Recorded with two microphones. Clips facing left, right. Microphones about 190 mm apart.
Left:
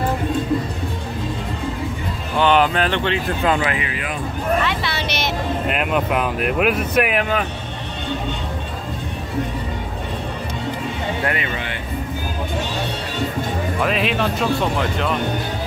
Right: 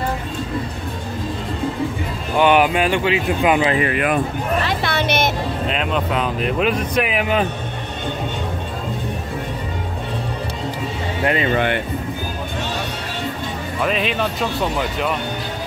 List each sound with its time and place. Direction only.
2.3 s speech: 10° right (ahead or behind)
3.7 s speech: 55° right (ahead or behind)
4.6 s a sound: 50° right (ahead or behind)
5.7 s speech: 10° left (ahead or behind)
11.2 s speech: 30° right (ahead or behind)
11.5 s speech: 60° right (ahead or behind)
13.8 s speech: centre (ahead or behind)